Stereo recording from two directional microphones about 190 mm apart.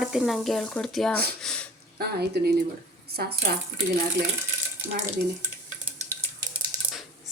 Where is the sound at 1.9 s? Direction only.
60° right (ahead or behind).